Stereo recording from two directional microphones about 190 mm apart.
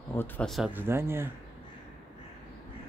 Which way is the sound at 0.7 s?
10° right (ahead or behind).